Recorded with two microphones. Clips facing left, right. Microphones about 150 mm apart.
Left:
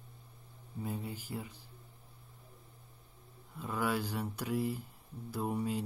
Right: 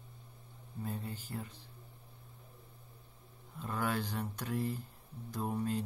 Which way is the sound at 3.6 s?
10° left (ahead or behind).